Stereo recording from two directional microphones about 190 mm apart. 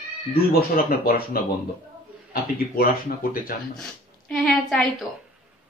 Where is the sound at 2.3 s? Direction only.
50° left (ahead or behind).